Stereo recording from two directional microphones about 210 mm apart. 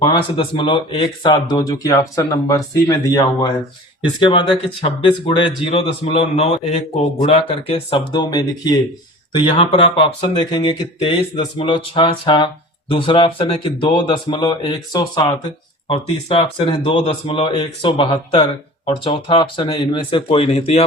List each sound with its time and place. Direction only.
0.0 s speech: 25° left (ahead or behind)